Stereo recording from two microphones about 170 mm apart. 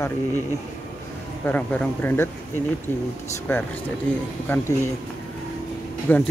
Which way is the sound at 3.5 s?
15° left (ahead or behind).